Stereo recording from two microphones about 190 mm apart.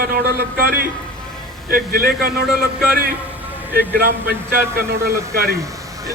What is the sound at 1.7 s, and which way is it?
Speech, 50° right (ahead or behind).